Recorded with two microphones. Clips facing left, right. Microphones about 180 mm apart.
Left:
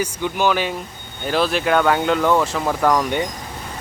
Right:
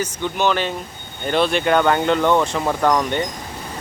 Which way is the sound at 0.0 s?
10° left (ahead or behind).